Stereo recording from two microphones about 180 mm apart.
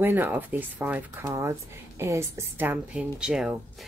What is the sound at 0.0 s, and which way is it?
Speech, 10° right (ahead or behind).